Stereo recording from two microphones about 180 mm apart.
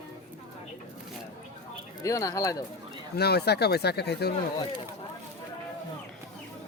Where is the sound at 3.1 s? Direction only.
65° left (ahead or behind).